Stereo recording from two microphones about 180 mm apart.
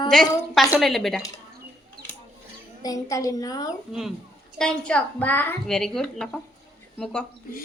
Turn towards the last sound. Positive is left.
turn(degrees=5)  # may be behind; listen again after turning